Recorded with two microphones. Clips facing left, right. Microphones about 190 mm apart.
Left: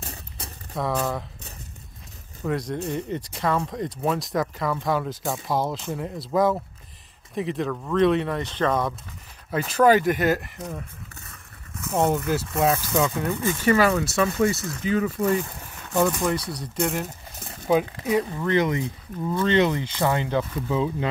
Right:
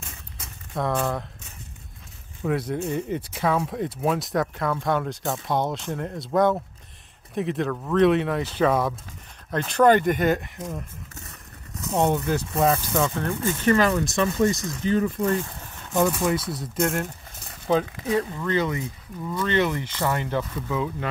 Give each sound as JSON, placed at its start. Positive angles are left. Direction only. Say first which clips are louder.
{"t": 0.0, "sound": "a sound", "louder": "left 4 dB", "side_deg": 35}
{"t": 0.7, "sound": "speech", "louder": "right 1 dB", "side_deg": 0}
{"t": 2.4, "sound": "speech", "louder": "right 1 dB", "side_deg": -5}
{"t": 11.9, "sound": "speech", "louder": "even", "side_deg": 0}
{"t": 17.6, "sound": "speech", "louder": "left 1 dB", "side_deg": 15}